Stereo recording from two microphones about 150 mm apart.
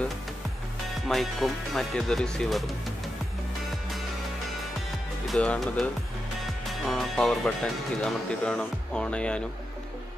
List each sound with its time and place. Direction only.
1.0 s speech: centre (ahead or behind)
5.3 s speech: 5° left (ahead or behind)